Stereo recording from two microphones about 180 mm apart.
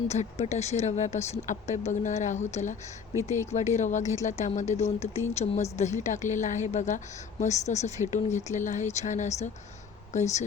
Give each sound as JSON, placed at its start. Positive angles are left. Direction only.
{"t": 0.1, "sound": "speech", "side_deg": 40}
{"t": 3.8, "sound": "speech", "side_deg": 40}